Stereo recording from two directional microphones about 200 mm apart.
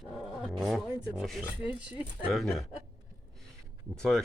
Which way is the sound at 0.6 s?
Centre (ahead or behind).